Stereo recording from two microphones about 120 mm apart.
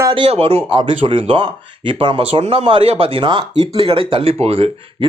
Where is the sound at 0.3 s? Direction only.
55° right (ahead or behind).